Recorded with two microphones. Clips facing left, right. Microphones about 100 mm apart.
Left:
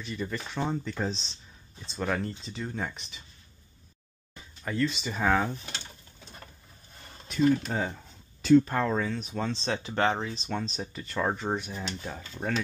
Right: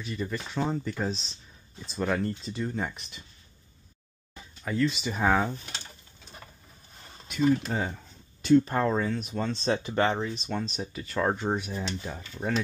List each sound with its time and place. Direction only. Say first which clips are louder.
0.0 s speech: right 1 dB; centre (ahead or behind)
4.6 s speech: right 2 dB; centre (ahead or behind)
7.6 s speech: even; centre (ahead or behind)
12.4 s speech: right 1 dB; 20° left (ahead or behind)